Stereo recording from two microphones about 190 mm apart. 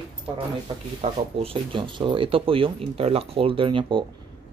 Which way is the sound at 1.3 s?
30° right (ahead or behind).